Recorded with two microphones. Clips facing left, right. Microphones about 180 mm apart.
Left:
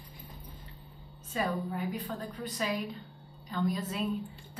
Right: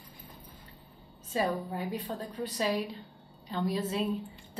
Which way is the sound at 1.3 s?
30° right (ahead or behind).